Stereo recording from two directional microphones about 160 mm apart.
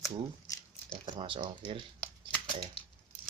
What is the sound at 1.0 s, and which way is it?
Speech, 35° right (ahead or behind).